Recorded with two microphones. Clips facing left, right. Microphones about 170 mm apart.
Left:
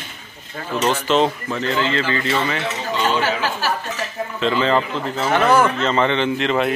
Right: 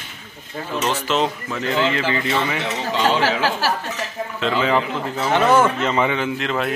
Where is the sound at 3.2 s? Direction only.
90° right.